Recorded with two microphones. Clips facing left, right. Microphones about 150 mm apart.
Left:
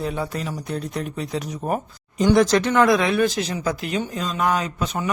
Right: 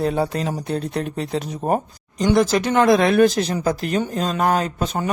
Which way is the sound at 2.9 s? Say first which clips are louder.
Right 5 dB; 45° right (ahead or behind).